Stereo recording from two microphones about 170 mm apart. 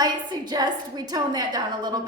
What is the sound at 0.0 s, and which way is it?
A woman's voice, 25° right (ahead or behind).